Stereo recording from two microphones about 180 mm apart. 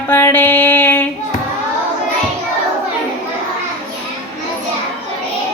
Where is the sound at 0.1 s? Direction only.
15° left (ahead or behind).